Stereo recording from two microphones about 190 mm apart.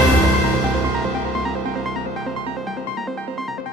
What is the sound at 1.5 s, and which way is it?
Music, centre (ahead or behind).